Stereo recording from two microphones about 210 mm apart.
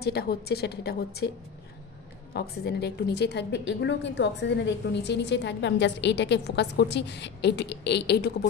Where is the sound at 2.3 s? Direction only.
50° left (ahead or behind).